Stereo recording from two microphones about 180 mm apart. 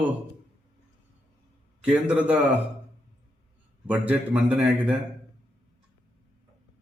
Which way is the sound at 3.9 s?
10° right (ahead or behind).